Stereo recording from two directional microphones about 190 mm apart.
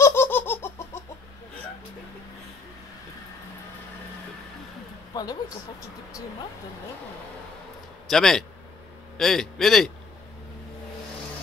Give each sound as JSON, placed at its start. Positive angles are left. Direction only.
{"t": 0.0, "sound": "a sound", "side_deg": 10}
{"t": 5.1, "sound": "speech", "side_deg": 20}
{"t": 8.1, "sound": "a man's voice", "side_deg": 0}